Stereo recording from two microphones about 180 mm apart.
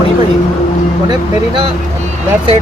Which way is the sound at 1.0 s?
25° right (ahead or behind).